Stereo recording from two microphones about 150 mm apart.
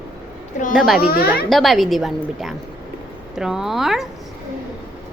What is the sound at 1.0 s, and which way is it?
Speech, 90° left.